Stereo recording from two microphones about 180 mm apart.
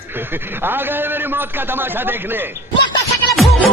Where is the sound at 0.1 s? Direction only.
10° right (ahead or behind).